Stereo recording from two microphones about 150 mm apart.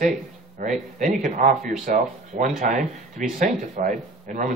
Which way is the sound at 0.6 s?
55° right (ahead or behind).